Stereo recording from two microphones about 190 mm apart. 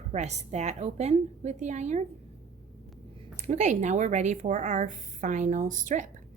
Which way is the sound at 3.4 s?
40° right (ahead or behind).